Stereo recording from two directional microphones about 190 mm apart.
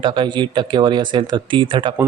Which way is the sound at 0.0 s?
25° right (ahead or behind).